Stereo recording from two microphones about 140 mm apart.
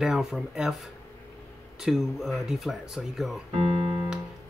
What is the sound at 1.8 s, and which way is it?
Speech, 5° right (ahead or behind).